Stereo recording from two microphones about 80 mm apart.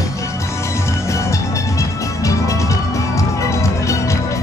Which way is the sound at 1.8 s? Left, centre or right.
Left.